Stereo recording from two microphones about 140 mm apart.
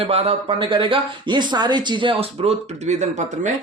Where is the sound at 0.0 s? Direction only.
45° right (ahead or behind).